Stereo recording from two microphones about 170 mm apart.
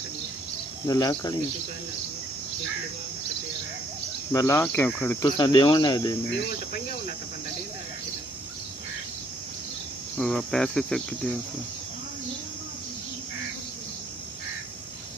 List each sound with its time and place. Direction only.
0.8 s speech: 20° left (ahead or behind)
4.3 s speech: 15° left (ahead or behind)
5.4 s speech: 25° left (ahead or behind)
10.1 s cricket: 5° left (ahead or behind)